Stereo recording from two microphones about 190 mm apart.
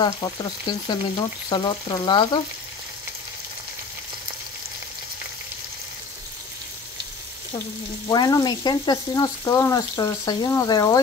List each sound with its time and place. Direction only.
0.0 s frying: 20° left (ahead or behind)
8.1 s frying: 20° left (ahead or behind)